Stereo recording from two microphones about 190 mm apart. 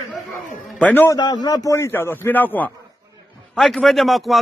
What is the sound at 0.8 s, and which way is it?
Speech, 10° left (ahead or behind).